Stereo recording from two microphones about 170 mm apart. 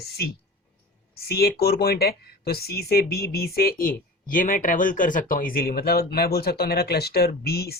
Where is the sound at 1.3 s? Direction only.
65° left (ahead or behind).